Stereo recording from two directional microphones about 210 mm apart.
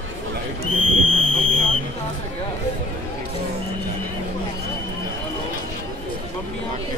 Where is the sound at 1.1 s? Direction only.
70° right (ahead or behind).